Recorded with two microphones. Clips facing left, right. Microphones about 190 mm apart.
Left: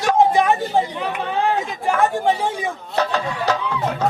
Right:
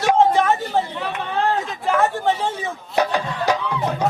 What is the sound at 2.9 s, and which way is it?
Music, 15° right (ahead or behind).